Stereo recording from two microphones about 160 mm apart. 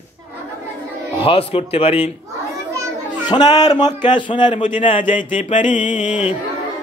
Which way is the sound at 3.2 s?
25° left (ahead or behind).